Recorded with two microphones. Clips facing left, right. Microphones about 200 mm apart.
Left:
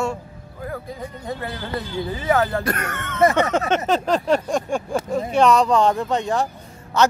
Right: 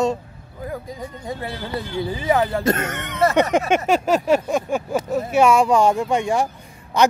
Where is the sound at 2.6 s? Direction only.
25° right (ahead or behind).